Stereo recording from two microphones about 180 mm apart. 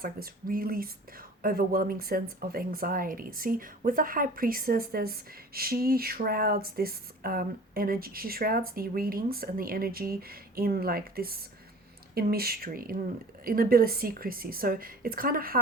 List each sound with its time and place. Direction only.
0.0 s speech: 55° right (ahead or behind)